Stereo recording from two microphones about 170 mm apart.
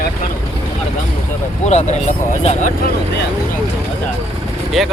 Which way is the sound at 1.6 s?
40° left (ahead or behind).